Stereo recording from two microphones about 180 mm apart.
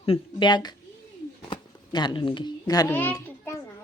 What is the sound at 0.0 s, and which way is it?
A child's voice, 30° left (ahead or behind).